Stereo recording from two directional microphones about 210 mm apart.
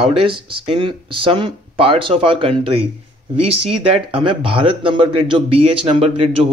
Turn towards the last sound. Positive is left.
turn(degrees=-30)  # may be behind; listen again after turning